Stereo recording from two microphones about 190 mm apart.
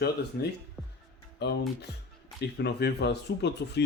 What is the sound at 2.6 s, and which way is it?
Speech, 60° left (ahead or behind).